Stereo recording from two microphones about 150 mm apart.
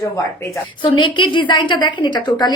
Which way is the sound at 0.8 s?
30° left (ahead or behind).